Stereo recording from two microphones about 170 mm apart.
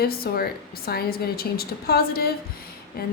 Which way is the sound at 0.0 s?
65° left (ahead or behind).